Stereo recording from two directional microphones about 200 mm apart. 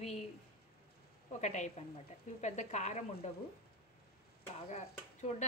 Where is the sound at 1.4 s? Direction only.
35° left (ahead or behind).